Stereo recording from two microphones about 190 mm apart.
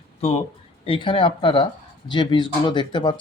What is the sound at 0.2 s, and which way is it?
Speech, 30° left (ahead or behind).